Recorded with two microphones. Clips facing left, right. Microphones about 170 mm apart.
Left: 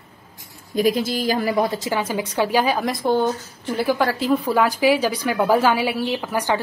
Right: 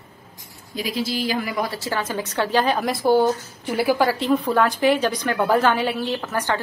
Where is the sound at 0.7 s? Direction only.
50° left (ahead or behind).